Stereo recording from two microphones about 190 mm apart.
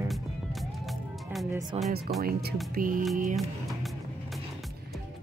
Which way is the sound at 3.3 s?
Centre (ahead or behind).